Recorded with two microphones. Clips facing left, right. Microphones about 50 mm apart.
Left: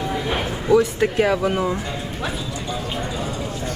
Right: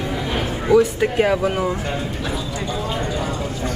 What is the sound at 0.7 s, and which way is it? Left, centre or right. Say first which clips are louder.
Speech: right 1 dB; centre.